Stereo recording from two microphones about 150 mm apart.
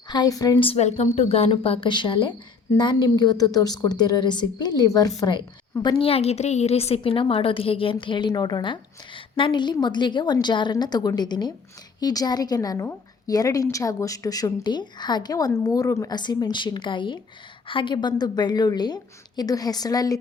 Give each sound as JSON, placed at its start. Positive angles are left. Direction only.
{"t": 0.1, "sound": "a woman's voice", "side_deg": 25}